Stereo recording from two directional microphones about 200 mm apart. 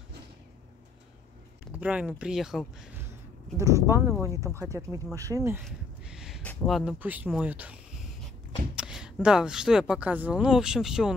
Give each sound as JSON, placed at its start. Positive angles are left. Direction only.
{"t": 1.7, "sound": "speech", "side_deg": -5}
{"t": 3.5, "sound": "speech", "side_deg": -15}
{"t": 5.6, "sound": "a sound", "side_deg": -5}
{"t": 6.4, "sound": "speech", "side_deg": 5}